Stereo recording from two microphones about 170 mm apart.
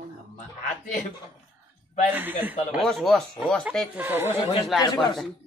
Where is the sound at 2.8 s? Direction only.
Centre (ahead or behind).